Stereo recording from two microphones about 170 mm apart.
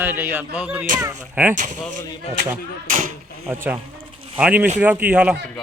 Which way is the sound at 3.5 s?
15° right (ahead or behind).